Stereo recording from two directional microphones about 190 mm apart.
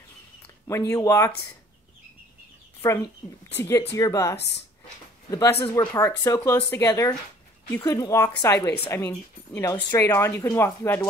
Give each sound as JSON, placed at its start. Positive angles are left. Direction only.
{"t": 0.7, "sound": "speech", "side_deg": 15}
{"t": 2.8, "sound": "speech", "side_deg": 15}